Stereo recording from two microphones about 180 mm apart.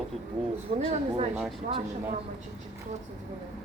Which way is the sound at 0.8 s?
35° right (ahead or behind).